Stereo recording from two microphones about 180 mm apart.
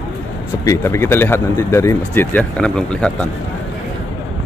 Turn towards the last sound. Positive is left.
turn(degrees=5)  # may be behind; listen again after turning